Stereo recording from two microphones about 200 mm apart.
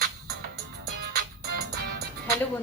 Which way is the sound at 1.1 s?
50° right (ahead or behind).